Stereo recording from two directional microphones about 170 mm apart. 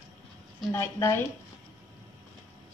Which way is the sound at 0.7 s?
15° left (ahead or behind).